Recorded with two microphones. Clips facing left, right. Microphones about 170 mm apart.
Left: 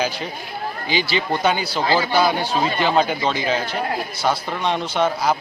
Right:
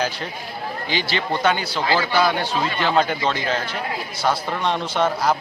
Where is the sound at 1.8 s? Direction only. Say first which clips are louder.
Left 2 dB; 25° left (ahead or behind).